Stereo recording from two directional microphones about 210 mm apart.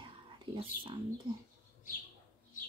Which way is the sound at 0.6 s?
25° right (ahead or behind).